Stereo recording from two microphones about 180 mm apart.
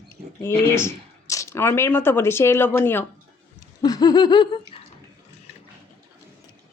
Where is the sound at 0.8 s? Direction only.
15° left (ahead or behind).